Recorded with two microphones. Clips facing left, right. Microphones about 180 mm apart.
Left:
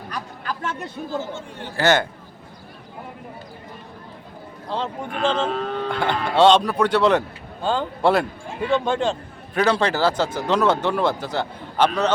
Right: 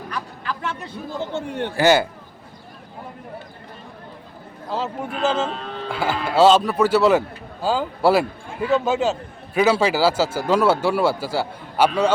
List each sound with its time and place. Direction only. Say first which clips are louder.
0.1 s a sound: even; 40° left (ahead or behind)
1.2 s a man's voice: right 6 dB; 65° right (ahead or behind)
1.7 s speech: right 2 dB; 10° right (ahead or behind)
4.7 s speech: right 1 dB; 5° right (ahead or behind)